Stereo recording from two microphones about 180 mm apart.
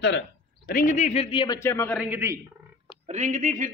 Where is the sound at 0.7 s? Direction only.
45° left (ahead or behind); by 1.6 s 25° left (ahead or behind).